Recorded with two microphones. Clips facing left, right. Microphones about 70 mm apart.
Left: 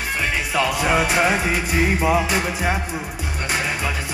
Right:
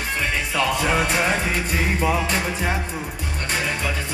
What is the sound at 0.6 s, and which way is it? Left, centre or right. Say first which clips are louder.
Music: left 2 dB; centre.